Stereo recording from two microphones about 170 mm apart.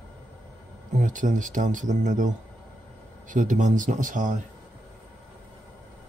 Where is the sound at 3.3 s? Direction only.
50° right (ahead or behind).